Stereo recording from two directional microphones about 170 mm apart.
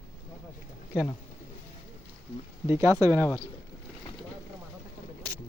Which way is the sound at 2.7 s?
15° right (ahead or behind).